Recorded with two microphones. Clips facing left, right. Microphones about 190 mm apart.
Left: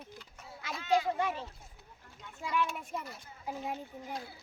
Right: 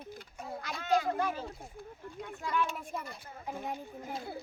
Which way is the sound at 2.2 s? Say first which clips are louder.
Right 9 dB; 55° right (ahead or behind).